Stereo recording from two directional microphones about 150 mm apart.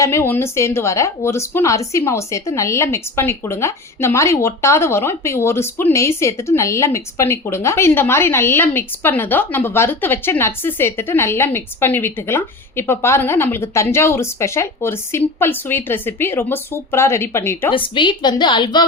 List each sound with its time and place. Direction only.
0.0 s speech: 20° left (ahead or behind)
17.7 s a woman's voice: 35° left (ahead or behind)